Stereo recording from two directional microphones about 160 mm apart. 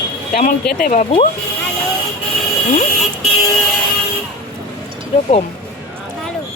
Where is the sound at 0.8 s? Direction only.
55° left (ahead or behind).